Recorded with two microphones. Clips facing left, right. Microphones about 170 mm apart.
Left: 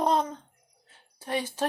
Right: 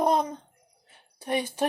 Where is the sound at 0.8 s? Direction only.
15° right (ahead or behind).